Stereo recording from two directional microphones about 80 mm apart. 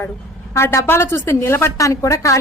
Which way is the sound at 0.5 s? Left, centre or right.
Left.